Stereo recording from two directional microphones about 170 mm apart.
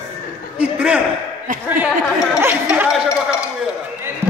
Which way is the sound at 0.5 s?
5° right (ahead or behind).